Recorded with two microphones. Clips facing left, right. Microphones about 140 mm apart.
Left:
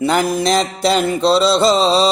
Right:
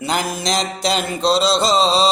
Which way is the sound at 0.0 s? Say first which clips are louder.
Left 6 dB; 55° left (ahead or behind).